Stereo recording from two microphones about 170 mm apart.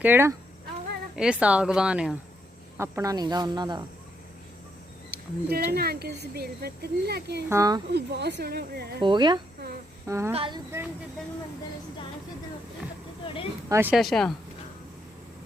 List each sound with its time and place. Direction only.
0.0 s speech: 15° right (ahead or behind)
2.7 s speech: 15° right (ahead or behind)
5.5 s speech: 65° right (ahead or behind)
7.5 s speech: 20° right (ahead or behind)
7.9 s speech: 75° right (ahead or behind)
9.0 s speech: 25° right (ahead or behind)
10.3 s speech: 30° right (ahead or behind)
13.2 s speech: 30° left (ahead or behind)
13.7 s speech: 15° right (ahead or behind)
13.9 s speech: centre (ahead or behind)